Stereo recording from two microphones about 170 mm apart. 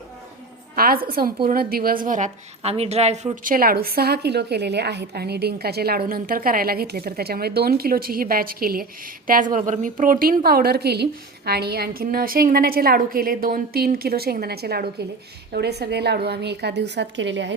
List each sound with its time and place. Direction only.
0.8 s a woman's voice: 60° right (ahead or behind); by 3.5 s 40° right (ahead or behind)
3.5 s a woman's voice: 60° right (ahead or behind); by 17.5 s 90° right